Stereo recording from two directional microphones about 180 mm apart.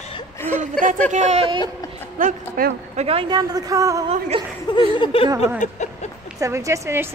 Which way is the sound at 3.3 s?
20° right (ahead or behind).